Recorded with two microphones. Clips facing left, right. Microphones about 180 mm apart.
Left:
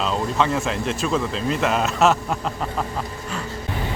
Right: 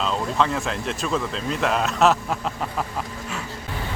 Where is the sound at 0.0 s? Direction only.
Centre (ahead or behind).